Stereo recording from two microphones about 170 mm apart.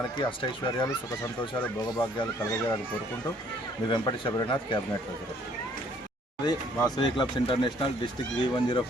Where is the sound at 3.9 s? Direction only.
25° left (ahead or behind).